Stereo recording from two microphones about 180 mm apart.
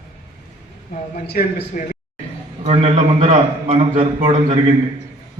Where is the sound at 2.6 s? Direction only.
35° right (ahead or behind).